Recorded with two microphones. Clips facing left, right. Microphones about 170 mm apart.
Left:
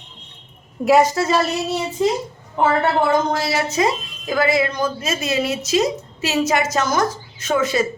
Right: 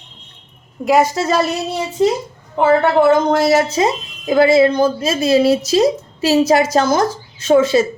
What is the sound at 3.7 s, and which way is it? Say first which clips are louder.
Speech: right 3 dB; 25° right (ahead or behind).